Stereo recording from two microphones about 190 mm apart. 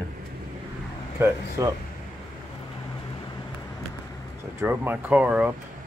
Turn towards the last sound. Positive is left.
turn(degrees=-5)  # may be behind; listen again after turning